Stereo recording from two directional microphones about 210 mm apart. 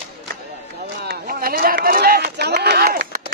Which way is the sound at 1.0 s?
45° right (ahead or behind).